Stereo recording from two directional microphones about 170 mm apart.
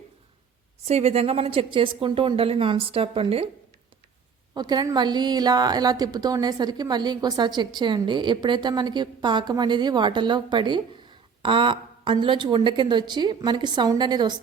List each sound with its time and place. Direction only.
0.9 s a woman's voice: 40° right (ahead or behind)
4.5 s a woman's voice: 25° right (ahead or behind)